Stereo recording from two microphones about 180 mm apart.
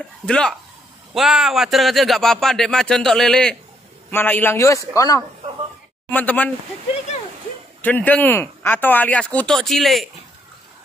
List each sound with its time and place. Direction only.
0.3 s speech: 5° left (ahead or behind)
7.8 s speech: 10° left (ahead or behind)